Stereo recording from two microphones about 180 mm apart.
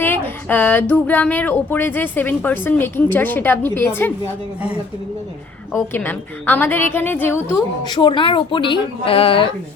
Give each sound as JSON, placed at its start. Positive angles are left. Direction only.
{"t": 0.0, "sound": "speech", "side_deg": 10}
{"t": 5.9, "sound": "speech", "side_deg": 10}
{"t": 7.5, "sound": "a woman's voice", "side_deg": 25}